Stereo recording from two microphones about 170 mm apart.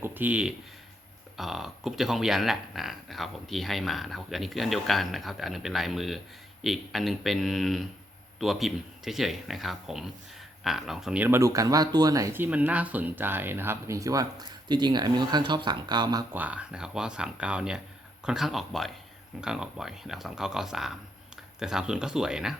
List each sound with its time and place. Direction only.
0.0 s speech: 10° right (ahead or behind)
16.3 s speech: 10° right (ahead or behind)